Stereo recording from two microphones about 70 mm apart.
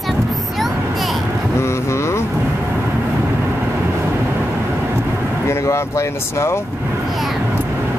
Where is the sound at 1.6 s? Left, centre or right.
Left.